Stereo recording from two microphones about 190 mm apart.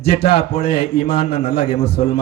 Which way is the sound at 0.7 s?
60° left (ahead or behind).